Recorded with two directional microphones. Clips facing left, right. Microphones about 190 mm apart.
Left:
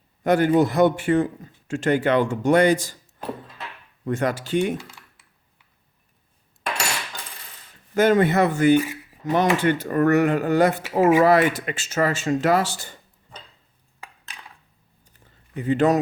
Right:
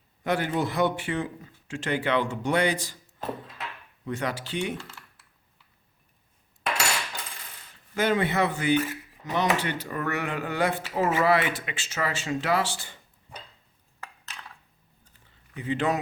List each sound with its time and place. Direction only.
0.3 s a man's voice: 50° left (ahead or behind)
4.0 s a man's voice: 50° left (ahead or behind)
4.8 s typing: 15° left (ahead or behind)
7.9 s a man's voice: 45° left (ahead or behind)
8.7 s speech: 10° left (ahead or behind)
9.2 s a man's voice: 50° left (ahead or behind)
15.5 s a man's voice: 45° left (ahead or behind)